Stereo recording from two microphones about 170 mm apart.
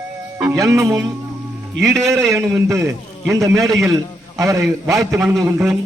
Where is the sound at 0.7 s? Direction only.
15° right (ahead or behind).